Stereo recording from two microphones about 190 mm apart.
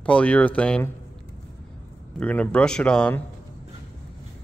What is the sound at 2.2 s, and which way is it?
Speech, 5° left (ahead or behind).